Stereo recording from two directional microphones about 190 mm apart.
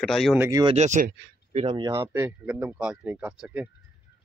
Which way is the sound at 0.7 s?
40° right (ahead or behind).